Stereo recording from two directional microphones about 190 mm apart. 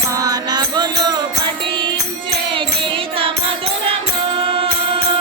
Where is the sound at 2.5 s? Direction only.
25° right (ahead or behind).